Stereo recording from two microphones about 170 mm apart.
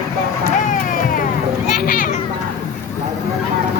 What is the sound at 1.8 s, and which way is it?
Children playing, 55° left (ahead or behind).